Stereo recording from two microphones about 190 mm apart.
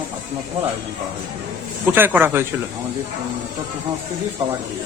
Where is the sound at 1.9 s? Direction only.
10° right (ahead or behind).